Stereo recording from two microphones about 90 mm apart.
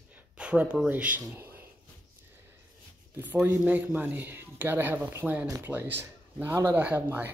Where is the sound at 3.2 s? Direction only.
20° right (ahead or behind).